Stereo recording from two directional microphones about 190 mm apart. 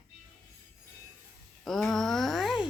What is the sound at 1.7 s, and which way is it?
Speech, centre (ahead or behind).